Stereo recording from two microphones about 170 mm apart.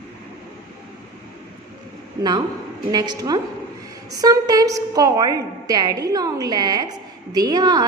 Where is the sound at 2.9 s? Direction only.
25° right (ahead or behind).